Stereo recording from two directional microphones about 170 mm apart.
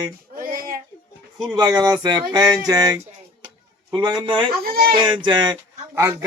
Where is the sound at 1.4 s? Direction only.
20° right (ahead or behind).